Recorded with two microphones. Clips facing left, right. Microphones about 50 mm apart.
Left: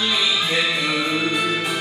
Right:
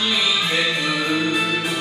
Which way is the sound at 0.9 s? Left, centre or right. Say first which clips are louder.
Even; centre.